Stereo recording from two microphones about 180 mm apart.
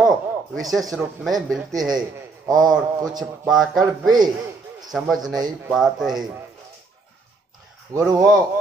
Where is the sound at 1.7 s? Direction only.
20° right (ahead or behind).